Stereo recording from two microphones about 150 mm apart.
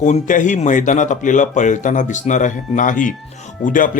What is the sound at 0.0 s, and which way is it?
Speech, 55° left (ahead or behind).